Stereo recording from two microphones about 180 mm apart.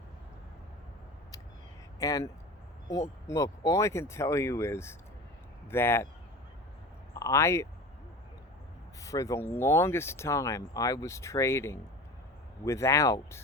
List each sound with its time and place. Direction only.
2.0 s speech: 20° left (ahead or behind)
7.1 s speech: 15° left (ahead or behind)
9.0 s speech: 20° left (ahead or behind)